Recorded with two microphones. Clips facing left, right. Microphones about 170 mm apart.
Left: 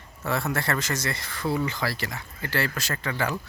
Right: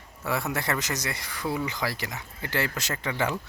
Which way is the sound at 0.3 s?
15° right (ahead or behind).